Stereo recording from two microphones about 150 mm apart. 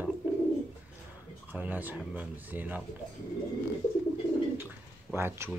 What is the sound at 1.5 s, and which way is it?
Speech, 10° right (ahead or behind).